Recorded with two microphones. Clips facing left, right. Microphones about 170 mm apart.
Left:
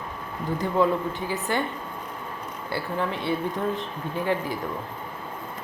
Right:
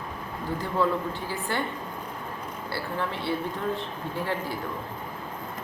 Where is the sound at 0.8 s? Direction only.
15° left (ahead or behind).